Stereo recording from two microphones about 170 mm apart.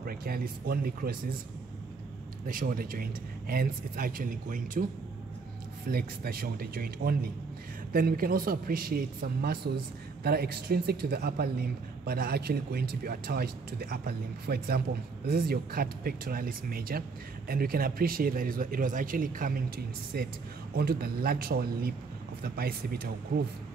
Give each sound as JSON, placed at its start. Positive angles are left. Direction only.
{"t": 0.0, "sound": "a man's voice", "side_deg": -60}
{"t": 2.4, "sound": "a man's voice", "side_deg": -55}
{"t": 5.9, "sound": "a man's voice", "side_deg": -65}
{"t": 20.1, "sound": "a man's voice", "side_deg": -65}